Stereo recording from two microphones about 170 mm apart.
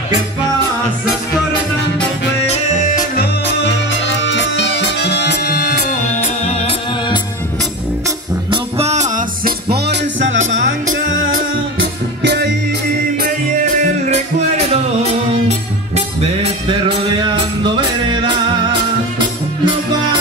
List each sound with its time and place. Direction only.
4.2 s music: 90° left; by 5.9 s 60° left (ahead or behind)
6.2 s music: 40° left (ahead or behind)
8.5 s music: 35° right (ahead or behind)
9.7 s music: 85° right
12.2 s music: 75° right (ahead or behind)
17.7 s music: 30° right (ahead or behind)